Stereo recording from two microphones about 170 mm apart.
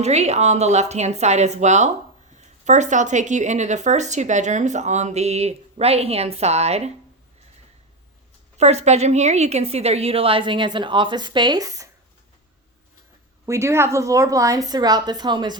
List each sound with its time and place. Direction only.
0.0 s a woman's voice: 40° right (ahead or behind)
8.5 s a woman's voice: 40° right (ahead or behind); by 11.9 s 20° right (ahead or behind)
13.4 s a woman's voice: 15° right (ahead or behind)